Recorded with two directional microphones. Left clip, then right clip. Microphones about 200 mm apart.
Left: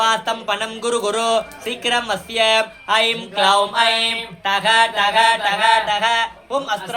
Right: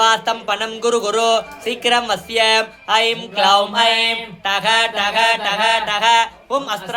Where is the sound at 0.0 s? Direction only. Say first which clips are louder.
Right 3 dB; 15° right (ahead or behind).